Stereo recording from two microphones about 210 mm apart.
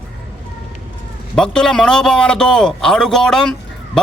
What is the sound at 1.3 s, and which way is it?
A man's voice, 5° left (ahead or behind).